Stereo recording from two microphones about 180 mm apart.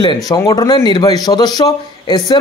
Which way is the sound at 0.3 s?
20° left (ahead or behind).